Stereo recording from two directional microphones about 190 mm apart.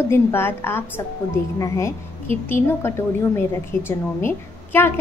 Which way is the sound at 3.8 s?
10° left (ahead or behind).